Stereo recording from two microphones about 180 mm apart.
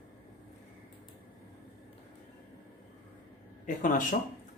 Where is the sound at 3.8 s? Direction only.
50° left (ahead or behind).